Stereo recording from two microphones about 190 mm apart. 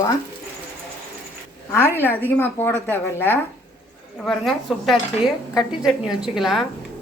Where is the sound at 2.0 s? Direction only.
10° left (ahead or behind).